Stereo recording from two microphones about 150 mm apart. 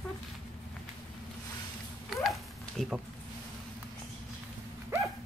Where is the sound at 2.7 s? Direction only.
5° right (ahead or behind).